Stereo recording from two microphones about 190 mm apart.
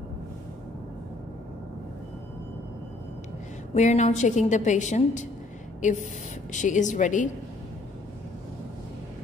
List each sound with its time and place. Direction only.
3.7 s a woman's voice: 40° left (ahead or behind)